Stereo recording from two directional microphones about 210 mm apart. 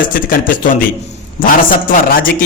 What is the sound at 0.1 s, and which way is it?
A man's voice, 40° left (ahead or behind).